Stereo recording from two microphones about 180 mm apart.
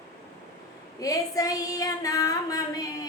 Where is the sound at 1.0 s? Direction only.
20° left (ahead or behind).